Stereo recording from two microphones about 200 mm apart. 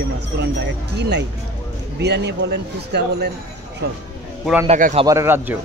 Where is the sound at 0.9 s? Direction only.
55° right (ahead or behind).